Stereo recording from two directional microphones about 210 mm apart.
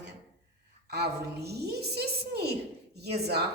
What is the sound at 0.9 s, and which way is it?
A woman's voice, 50° right (ahead or behind).